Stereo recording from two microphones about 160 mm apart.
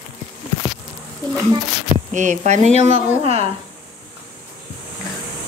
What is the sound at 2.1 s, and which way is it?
A woman's voice, 50° right (ahead or behind).